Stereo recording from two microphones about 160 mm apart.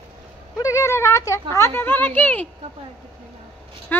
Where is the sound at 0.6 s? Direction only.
20° left (ahead or behind).